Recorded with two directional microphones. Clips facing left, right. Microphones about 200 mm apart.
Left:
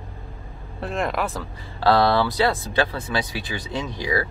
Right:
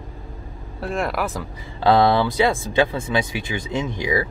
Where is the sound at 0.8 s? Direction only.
Centre (ahead or behind).